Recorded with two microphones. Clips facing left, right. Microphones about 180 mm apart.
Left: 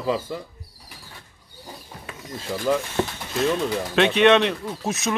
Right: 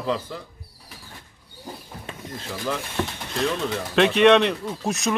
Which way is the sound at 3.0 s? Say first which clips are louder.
Left 3 dB; 20° left (ahead or behind).